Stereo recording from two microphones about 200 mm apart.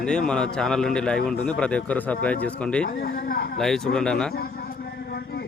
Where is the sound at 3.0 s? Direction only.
50° left (ahead or behind).